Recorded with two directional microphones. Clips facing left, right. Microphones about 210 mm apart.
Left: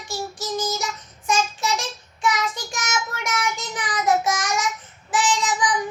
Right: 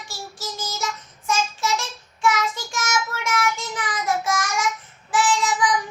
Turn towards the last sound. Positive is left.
turn(degrees=20)  # may be behind; listen again after turning